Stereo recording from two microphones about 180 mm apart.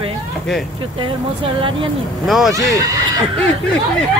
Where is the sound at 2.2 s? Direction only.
Centre (ahead or behind).